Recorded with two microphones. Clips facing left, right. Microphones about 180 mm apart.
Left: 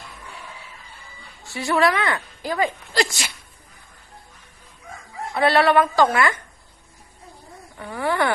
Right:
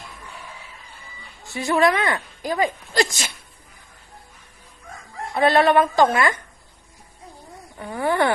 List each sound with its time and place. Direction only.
1.5 s a woman's voice: 20° right (ahead or behind)
5.3 s a woman's voice: 20° right (ahead or behind)
7.8 s a woman's voice: 30° right (ahead or behind)